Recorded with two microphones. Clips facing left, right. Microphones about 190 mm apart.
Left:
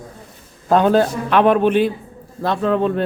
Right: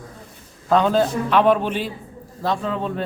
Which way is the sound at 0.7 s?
50° left (ahead or behind).